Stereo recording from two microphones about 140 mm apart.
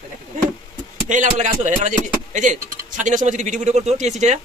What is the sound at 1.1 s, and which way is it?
Speech, 65° right (ahead or behind).